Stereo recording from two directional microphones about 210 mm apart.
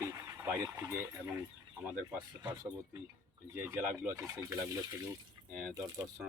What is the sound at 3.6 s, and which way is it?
Speech, 10° right (ahead or behind).